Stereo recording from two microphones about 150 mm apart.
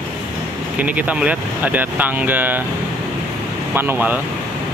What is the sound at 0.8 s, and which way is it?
Speech, 10° right (ahead or behind).